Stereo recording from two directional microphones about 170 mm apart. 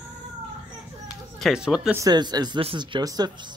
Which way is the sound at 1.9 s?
25° right (ahead or behind).